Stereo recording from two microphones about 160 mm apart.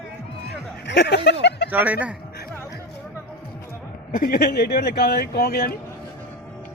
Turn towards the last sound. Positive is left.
turn(degrees=75)  # may be behind; listen again after turning